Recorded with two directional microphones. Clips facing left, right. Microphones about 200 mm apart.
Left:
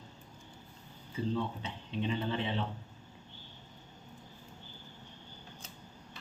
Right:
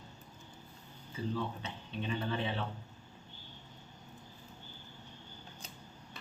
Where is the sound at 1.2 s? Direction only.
20° left (ahead or behind).